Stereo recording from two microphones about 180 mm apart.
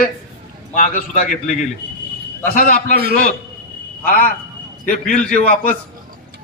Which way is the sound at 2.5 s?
50° left (ahead or behind).